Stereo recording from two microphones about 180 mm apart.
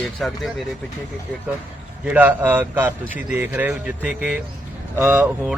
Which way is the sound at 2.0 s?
10° right (ahead or behind).